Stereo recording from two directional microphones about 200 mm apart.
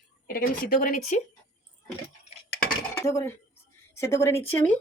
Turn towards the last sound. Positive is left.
turn(degrees=10)  # may be behind; listen again after turning